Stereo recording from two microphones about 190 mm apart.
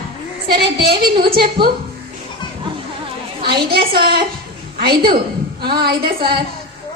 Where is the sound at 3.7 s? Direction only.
55° right (ahead or behind).